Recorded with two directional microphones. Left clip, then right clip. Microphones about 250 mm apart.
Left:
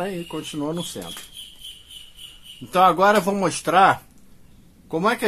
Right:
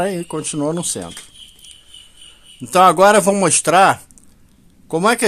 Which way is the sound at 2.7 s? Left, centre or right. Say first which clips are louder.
Right 6 dB; right.